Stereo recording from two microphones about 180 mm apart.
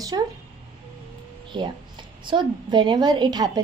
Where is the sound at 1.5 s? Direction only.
25° right (ahead or behind).